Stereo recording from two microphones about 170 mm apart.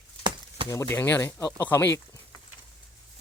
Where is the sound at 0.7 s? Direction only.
15° left (ahead or behind).